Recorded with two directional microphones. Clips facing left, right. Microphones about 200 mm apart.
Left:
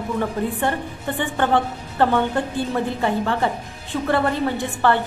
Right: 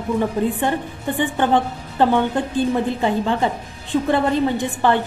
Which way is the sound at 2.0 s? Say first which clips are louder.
Right 2 dB; 15° right (ahead or behind).